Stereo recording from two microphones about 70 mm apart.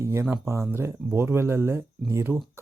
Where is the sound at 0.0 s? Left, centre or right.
Right.